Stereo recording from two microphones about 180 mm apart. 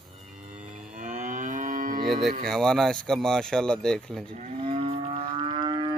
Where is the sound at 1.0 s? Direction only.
45° right (ahead or behind).